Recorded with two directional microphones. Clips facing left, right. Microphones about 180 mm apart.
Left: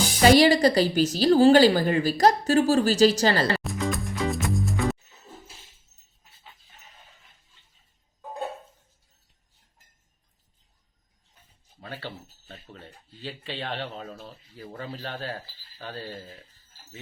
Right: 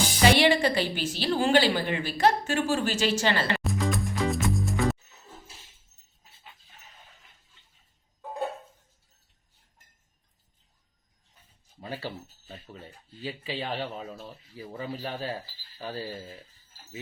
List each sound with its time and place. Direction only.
0.3 s a woman's voice: 40° left (ahead or behind)
3.6 s music: centre (ahead or behind)
11.8 s speech: 10° right (ahead or behind)